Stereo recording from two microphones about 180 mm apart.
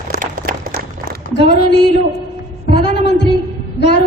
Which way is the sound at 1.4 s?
70° left (ahead or behind).